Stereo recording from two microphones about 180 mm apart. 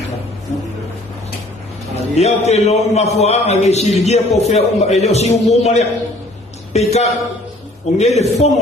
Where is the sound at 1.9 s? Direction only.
35° left (ahead or behind).